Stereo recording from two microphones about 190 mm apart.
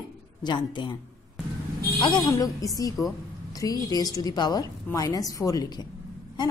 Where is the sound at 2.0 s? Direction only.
20° left (ahead or behind).